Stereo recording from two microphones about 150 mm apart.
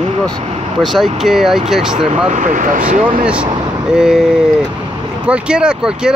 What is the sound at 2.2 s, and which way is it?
Speech, 55° right (ahead or behind).